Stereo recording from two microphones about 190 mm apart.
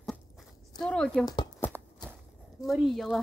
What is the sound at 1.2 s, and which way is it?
Speech, 20° left (ahead or behind).